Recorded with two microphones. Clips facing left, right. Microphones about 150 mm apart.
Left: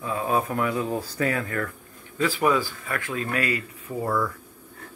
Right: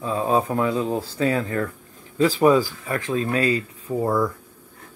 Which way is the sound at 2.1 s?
35° right (ahead or behind).